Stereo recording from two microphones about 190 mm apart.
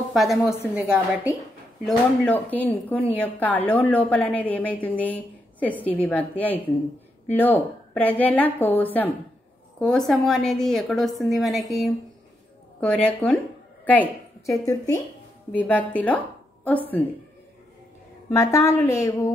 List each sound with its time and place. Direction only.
0.1 s a woman's voice: centre (ahead or behind)
1.9 s a woman's voice: 10° left (ahead or behind)
12.8 s a woman's voice: 5° left (ahead or behind)
18.3 s a woman's voice: 15° left (ahead or behind)